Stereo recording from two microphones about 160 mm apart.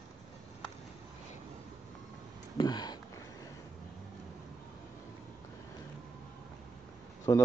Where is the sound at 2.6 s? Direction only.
25° left (ahead or behind).